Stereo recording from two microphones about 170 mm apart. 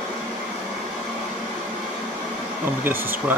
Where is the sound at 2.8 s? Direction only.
10° right (ahead or behind).